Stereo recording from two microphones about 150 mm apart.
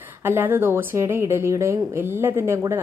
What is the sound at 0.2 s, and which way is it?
A woman's voice, 15° right (ahead or behind).